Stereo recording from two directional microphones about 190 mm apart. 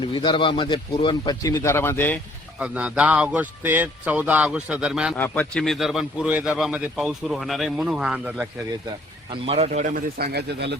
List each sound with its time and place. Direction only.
0.0 s speech: 25° left (ahead or behind)
2.6 s speech: 5° right (ahead or behind)
5.1 s speech: 10° left (ahead or behind)
9.3 s a man's voice: 30° right (ahead or behind)
9.9 s speech: 55° right (ahead or behind)